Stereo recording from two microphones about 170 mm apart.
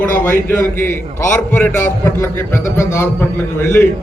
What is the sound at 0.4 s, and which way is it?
A man's voice, 15° left (ahead or behind).